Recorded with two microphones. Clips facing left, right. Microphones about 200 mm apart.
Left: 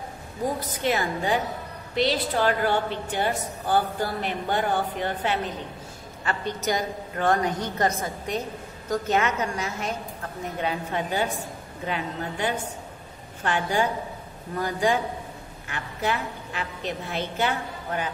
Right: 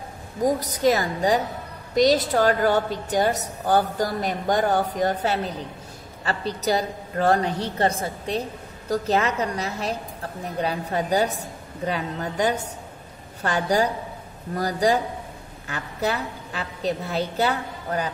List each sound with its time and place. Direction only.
0.4 s a woman's voice: 40° right (ahead or behind)